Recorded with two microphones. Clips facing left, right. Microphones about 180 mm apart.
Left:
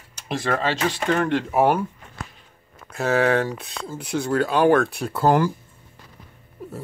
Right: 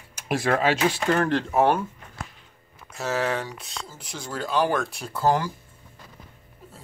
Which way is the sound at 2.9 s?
60° left (ahead or behind).